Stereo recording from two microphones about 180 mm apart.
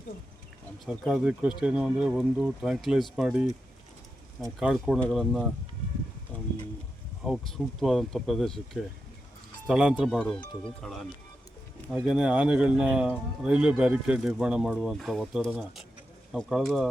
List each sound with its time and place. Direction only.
0.9 s a man's voice: 5° right (ahead or behind)
4.6 s a man's voice: centre (ahead or behind)
7.3 s a man's voice: centre (ahead or behind)